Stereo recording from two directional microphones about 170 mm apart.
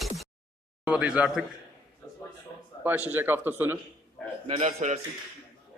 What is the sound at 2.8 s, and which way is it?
Speech, 10° right (ahead or behind).